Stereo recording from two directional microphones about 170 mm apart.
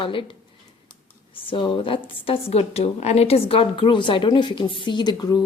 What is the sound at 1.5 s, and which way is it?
A woman's voice, 30° left (ahead or behind).